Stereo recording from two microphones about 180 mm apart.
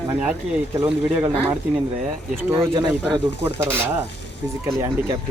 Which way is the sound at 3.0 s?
10° right (ahead or behind).